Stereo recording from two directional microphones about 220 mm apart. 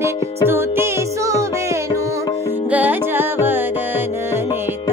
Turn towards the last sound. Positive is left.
turn(degrees=-10)  # may be behind; listen again after turning